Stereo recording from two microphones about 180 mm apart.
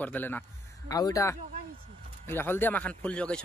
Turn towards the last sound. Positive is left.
turn(degrees=5)  # may be behind; listen again after turning